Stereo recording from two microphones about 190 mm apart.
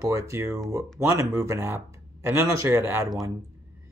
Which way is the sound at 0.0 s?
15° right (ahead or behind).